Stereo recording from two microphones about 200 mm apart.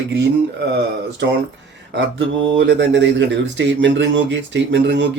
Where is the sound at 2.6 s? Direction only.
60° right (ahead or behind).